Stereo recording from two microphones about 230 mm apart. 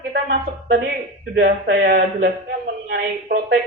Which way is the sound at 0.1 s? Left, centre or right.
Right.